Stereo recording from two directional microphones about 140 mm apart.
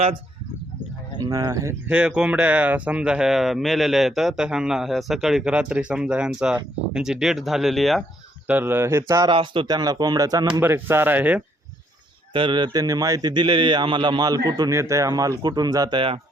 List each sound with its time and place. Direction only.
1.2 s speech: 25° right (ahead or behind)
1.9 s speech: 5° right (ahead or behind)
8.4 s speech: 15° right (ahead or behind)
9.3 s speech: 35° right (ahead or behind)
10.6 s speech: 15° right (ahead or behind)
12.3 s speech: 35° right (ahead or behind)